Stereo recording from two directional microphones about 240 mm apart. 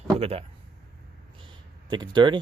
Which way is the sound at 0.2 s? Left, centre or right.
Right.